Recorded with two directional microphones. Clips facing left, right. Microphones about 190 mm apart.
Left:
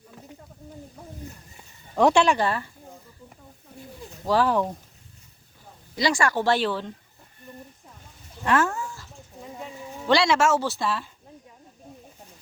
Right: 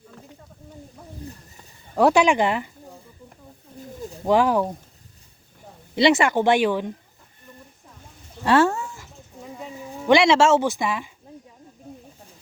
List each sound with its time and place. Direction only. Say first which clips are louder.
2.0 s speech: right 2 dB; 5° right (ahead or behind)
4.3 s speech: right 3 dB; 15° right (ahead or behind)
6.0 s speech: right 6 dB; 20° right (ahead or behind)
8.4 s speech: right 5 dB; 30° right (ahead or behind)
10.1 s speech: right 5 dB; 20° right (ahead or behind)